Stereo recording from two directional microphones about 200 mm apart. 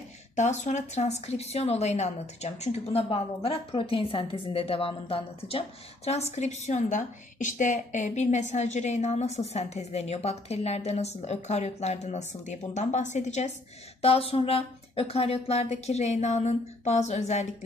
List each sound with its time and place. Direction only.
0.4 s a woman's voice: 35° left (ahead or behind)